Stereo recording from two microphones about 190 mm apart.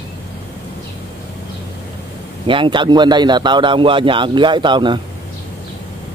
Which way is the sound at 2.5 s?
25° right (ahead or behind).